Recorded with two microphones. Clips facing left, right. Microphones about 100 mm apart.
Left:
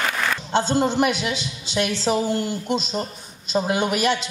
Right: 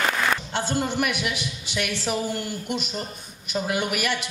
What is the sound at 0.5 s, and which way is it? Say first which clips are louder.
A woman's voice: left 6 dB; 20° left (ahead or behind).